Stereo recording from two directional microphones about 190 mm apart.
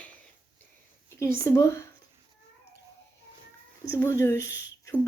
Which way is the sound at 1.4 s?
15° left (ahead or behind).